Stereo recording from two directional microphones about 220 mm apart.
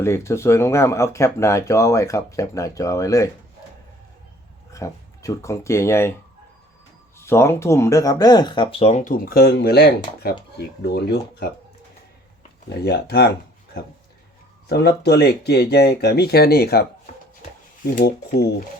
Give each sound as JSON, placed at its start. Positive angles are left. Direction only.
{"t": 0.0, "sound": "speech", "side_deg": 10}
{"t": 4.7, "sound": "speech", "side_deg": 15}
{"t": 7.2, "sound": "speech", "side_deg": 10}
{"t": 12.8, "sound": "speech", "side_deg": 50}
{"t": 14.7, "sound": "speech", "side_deg": 45}
{"t": 17.9, "sound": "speech", "side_deg": 45}